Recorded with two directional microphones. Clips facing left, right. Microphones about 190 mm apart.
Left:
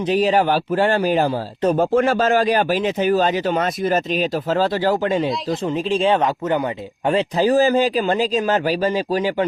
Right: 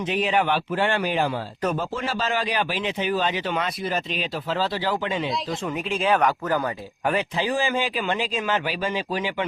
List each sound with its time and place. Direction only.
0.0 s a man's voice: 40° left (ahead or behind)
1.8 s a man's voice: 55° left (ahead or behind)
5.6 s speech: 30° left (ahead or behind)
7.3 s a man's voice: 40° left (ahead or behind)